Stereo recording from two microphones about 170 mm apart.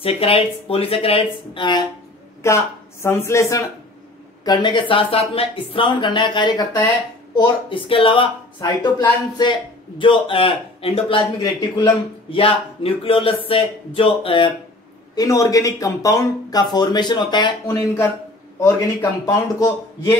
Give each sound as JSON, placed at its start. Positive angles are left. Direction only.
{"t": 0.0, "sound": "speech", "side_deg": 35}
{"t": 2.4, "sound": "a man's voice", "side_deg": 15}
{"t": 15.1, "sound": "a man's voice", "side_deg": 20}